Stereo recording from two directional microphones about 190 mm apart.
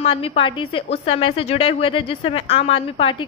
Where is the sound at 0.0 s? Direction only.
30° left (ahead or behind).